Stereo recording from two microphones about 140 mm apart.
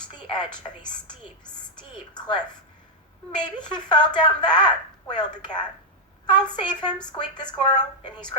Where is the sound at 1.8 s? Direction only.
30° left (ahead or behind).